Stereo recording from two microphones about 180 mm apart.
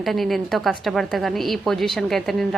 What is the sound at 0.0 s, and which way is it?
A woman's voice, centre (ahead or behind).